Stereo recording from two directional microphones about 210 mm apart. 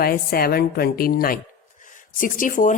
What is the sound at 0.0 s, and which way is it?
Speech, 45° left (ahead or behind).